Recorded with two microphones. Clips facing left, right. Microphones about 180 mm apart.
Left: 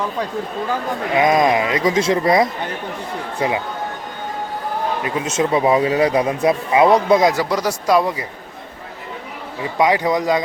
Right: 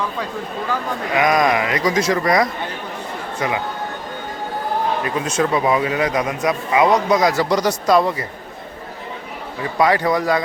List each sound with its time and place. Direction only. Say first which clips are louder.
1.1 s a man's voice: left 2 dB; 25° left (ahead or behind)
5.0 s a man's voice: even; 25° left (ahead or behind)
7.4 s speech: right 2 dB; 5° left (ahead or behind)
9.7 s speech: even; 15° left (ahead or behind)